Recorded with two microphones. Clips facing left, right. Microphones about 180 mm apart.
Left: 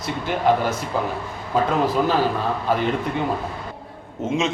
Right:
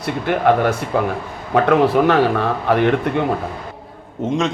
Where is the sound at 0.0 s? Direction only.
60° right (ahead or behind).